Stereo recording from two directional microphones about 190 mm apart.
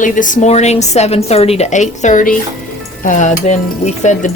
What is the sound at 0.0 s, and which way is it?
Cutlery, 45° left (ahead or behind).